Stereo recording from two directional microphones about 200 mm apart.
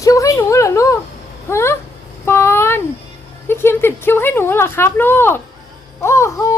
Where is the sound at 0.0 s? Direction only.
15° left (ahead or behind).